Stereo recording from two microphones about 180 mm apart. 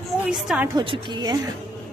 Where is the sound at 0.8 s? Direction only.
25° right (ahead or behind).